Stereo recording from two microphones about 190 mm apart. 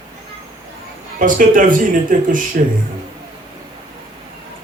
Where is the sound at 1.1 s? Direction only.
45° right (ahead or behind).